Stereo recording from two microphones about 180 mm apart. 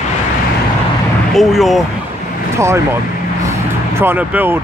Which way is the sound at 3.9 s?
10° right (ahead or behind).